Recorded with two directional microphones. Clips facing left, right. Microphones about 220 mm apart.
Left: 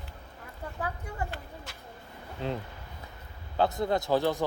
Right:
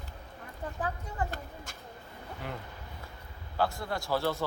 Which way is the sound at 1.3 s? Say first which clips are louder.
Even; 45° right (ahead or behind).